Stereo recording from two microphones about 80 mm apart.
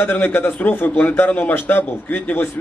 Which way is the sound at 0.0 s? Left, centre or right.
Left.